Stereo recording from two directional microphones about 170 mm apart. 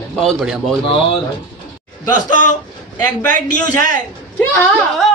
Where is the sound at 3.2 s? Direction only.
10° left (ahead or behind).